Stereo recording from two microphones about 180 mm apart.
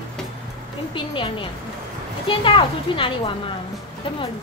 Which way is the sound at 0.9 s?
30° left (ahead or behind).